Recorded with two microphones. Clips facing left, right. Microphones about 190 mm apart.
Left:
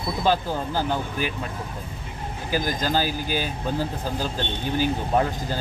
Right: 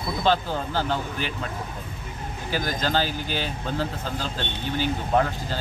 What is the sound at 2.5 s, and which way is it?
Speech, 10° left (ahead or behind).